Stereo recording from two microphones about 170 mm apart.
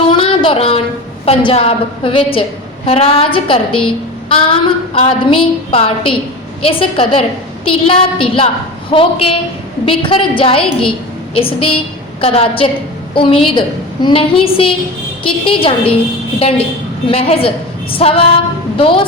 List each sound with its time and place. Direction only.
0.1 s a sound: 30° left (ahead or behind)
1.2 s a woman's voice: 30° left (ahead or behind)
17.1 s a woman's voice: 35° left (ahead or behind)